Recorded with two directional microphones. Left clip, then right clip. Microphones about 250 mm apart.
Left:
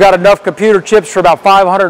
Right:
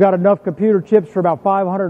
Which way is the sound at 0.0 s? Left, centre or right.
Centre.